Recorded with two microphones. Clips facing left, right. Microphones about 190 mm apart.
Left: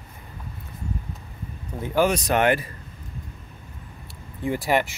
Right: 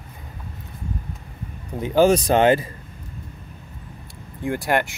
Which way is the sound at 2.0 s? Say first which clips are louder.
Right 6 dB; 30° right (ahead or behind).